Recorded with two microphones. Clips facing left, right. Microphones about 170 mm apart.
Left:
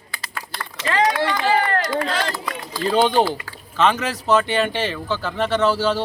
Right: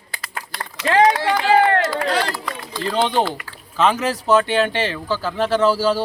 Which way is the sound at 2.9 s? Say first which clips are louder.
Left 2 dB; 5° left (ahead or behind).